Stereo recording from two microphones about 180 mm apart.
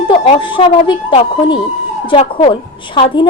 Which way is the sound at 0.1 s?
25° left (ahead or behind).